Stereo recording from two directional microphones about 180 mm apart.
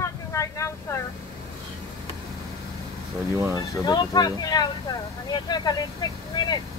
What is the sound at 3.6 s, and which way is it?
Speech, 25° left (ahead or behind).